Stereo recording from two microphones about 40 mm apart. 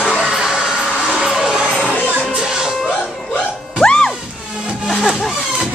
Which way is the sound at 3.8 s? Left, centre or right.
Centre.